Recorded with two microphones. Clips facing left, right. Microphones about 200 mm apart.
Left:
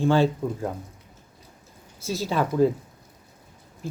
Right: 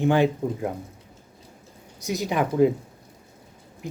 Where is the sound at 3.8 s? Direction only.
15° right (ahead or behind).